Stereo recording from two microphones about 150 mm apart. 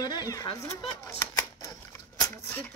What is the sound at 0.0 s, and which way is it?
Speech, 25° left (ahead or behind).